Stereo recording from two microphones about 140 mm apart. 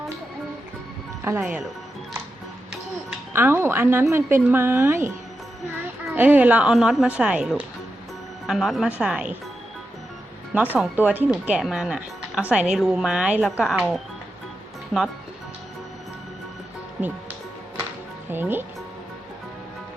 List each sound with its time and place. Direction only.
1.2 s a woman's voice: 15° right (ahead or behind)
3.3 s a woman's voice: 15° right (ahead or behind)
10.5 s a woman's voice: 15° right (ahead or behind)
18.3 s a woman's voice: 15° right (ahead or behind)